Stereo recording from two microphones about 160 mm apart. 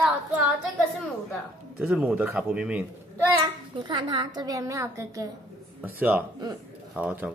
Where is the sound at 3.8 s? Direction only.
30° right (ahead or behind).